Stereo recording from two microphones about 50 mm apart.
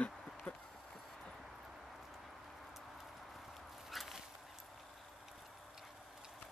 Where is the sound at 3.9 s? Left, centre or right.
Centre.